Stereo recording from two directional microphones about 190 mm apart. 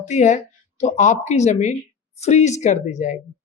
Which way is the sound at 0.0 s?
40° left (ahead or behind).